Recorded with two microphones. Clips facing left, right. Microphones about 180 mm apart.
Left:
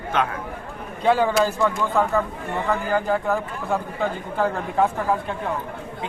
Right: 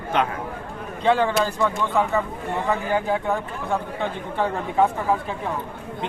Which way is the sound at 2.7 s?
Centre (ahead or behind).